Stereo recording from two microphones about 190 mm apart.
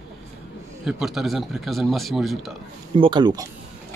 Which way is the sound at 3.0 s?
25° right (ahead or behind).